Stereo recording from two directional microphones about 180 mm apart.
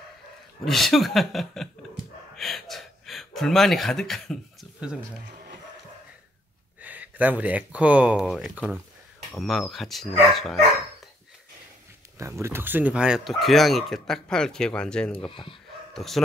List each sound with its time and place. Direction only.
0.7 s speech: centre (ahead or behind)
2.3 s gasp: centre (ahead or behind)
6.8 s speech: 10° right (ahead or behind)
12.2 s speech: 15° right (ahead or behind); by 15.1 s 5° left (ahead or behind)
15.1 s speech: 30° left (ahead or behind)
15.9 s speech: centre (ahead or behind)